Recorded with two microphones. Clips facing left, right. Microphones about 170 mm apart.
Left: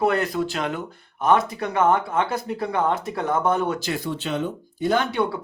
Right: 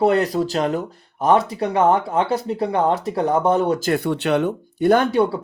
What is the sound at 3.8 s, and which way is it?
Speech, 60° right (ahead or behind).